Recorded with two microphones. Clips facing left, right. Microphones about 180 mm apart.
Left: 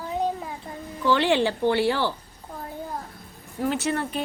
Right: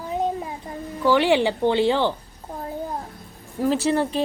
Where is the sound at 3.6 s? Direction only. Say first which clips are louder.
Right 5 dB; 30° right (ahead or behind).